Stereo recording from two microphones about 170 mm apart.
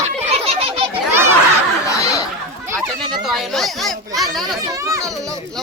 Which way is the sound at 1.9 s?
20° left (ahead or behind).